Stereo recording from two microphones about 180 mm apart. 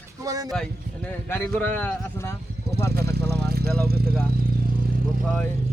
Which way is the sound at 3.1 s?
65° right (ahead or behind).